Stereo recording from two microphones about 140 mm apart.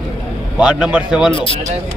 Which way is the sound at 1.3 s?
35° left (ahead or behind).